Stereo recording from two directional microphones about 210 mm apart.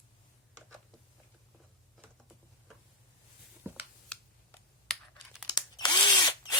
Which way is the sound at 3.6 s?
10° right (ahead or behind).